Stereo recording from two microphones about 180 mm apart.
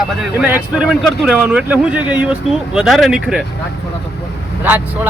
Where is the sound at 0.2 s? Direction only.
10° right (ahead or behind).